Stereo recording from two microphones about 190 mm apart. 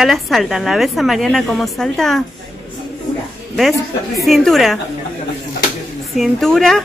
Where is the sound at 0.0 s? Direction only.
Centre (ahead or behind).